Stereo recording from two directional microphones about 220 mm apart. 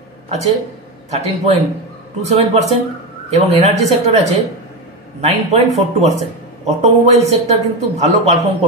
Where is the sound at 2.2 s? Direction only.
30° right (ahead or behind).